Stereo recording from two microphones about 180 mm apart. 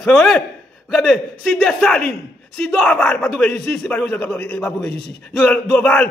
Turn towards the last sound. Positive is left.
turn(degrees=10)  # may be behind; listen again after turning